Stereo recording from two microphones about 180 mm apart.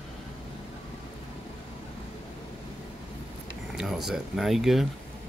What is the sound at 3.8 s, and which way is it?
Speech, centre (ahead or behind).